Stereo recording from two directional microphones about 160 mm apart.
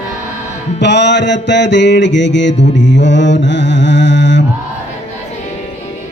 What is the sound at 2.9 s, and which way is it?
Mantra, 90° left.